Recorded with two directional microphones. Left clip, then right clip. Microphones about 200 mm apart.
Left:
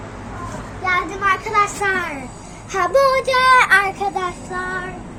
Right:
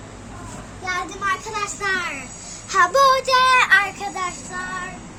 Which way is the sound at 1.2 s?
30° right (ahead or behind).